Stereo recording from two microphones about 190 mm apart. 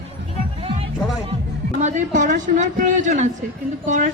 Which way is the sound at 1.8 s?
40° right (ahead or behind).